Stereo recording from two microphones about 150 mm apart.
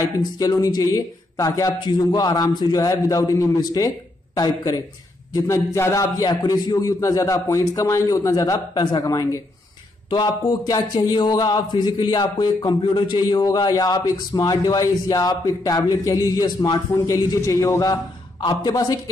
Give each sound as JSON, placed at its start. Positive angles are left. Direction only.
{"t": 0.0, "sound": "speech", "side_deg": 25}